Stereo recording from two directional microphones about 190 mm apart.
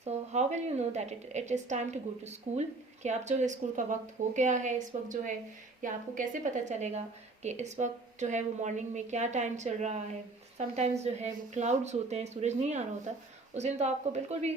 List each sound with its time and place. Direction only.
0.0 s a woman's voice: 35° right (ahead or behind)